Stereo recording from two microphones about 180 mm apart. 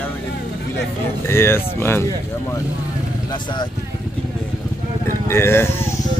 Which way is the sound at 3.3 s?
25° left (ahead or behind).